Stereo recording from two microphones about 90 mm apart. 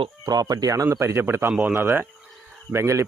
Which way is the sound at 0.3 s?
45° right (ahead or behind).